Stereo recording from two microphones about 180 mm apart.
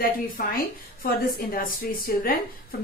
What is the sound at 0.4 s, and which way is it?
A woman's voice, 50° left (ahead or behind).